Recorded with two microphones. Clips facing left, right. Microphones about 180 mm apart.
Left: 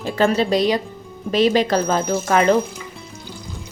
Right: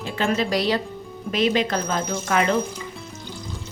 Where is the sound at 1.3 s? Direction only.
35° left (ahead or behind).